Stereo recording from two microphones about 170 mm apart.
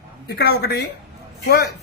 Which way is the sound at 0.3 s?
75° left (ahead or behind).